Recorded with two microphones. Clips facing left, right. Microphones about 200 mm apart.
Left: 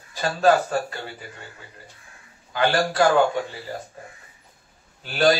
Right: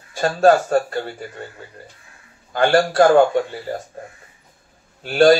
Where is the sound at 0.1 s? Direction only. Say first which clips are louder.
Right 5 dB; 50° right (ahead or behind).